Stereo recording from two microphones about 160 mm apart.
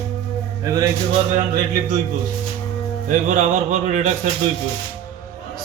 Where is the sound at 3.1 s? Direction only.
50° right (ahead or behind).